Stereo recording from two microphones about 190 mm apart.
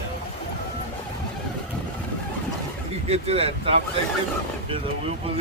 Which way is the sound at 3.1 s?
30° right (ahead or behind).